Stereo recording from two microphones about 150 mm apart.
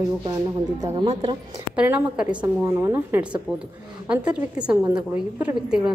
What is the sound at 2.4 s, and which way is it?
A woman's voice, 20° right (ahead or behind).